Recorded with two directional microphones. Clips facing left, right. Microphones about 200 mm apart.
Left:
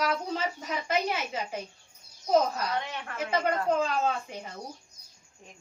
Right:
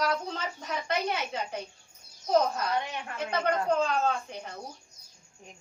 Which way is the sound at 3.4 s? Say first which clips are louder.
Right 2 dB; 5° left (ahead or behind).